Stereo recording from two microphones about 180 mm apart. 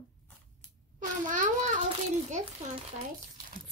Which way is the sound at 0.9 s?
45° right (ahead or behind).